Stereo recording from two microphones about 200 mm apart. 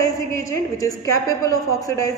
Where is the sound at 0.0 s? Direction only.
15° left (ahead or behind).